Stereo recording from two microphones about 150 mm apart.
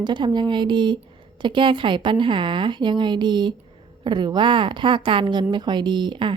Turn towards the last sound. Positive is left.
turn(degrees=-30)  # may be behind; listen again after turning